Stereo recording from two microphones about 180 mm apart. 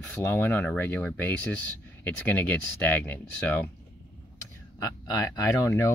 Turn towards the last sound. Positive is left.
turn(degrees=15)  # may be behind; listen again after turning